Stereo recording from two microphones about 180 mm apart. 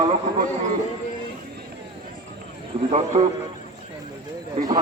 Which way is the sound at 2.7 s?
30° right (ahead or behind).